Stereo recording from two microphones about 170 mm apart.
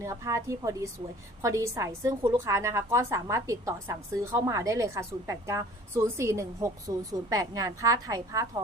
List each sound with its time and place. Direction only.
0.0 s a woman's voice: 15° right (ahead or behind)